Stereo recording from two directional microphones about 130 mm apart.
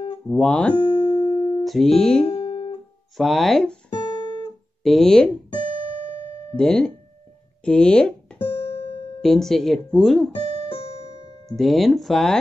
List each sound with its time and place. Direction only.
0.3 s speech: 10° left (ahead or behind)
1.0 s music: 35° left (ahead or behind)
1.6 s speech: centre (ahead or behind)
2.4 s guitar: 40° left (ahead or behind)
3.2 s speech: centre (ahead or behind)
3.9 s guitar: 30° left (ahead or behind)
4.8 s speech: 5° left (ahead or behind)
6.5 s speech: 5° left (ahead or behind)
8.4 s guitar: 45° left (ahead or behind)
9.2 s speech: centre (ahead or behind)
10.4 s music: 50° right (ahead or behind)
11.5 s speech: centre (ahead or behind)